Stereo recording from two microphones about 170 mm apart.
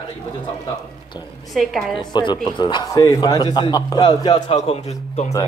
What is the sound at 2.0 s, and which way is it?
Speech, 25° left (ahead or behind).